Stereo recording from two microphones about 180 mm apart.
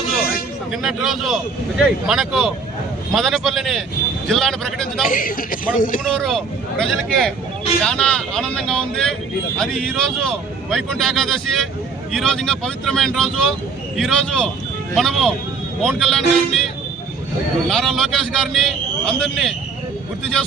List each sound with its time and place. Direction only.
0.7 s a man's voice: centre (ahead or behind)
5.0 s speech: 50° left (ahead or behind)
6.1 s a man's voice: centre (ahead or behind)
17.7 s a man's voice: centre (ahead or behind)